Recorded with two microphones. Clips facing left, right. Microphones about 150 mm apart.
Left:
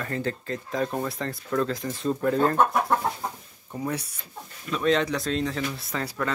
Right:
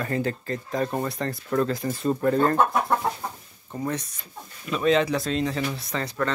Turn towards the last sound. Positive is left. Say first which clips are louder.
# right 2 dB
turn(degrees=5)  # may be behind; listen again after turning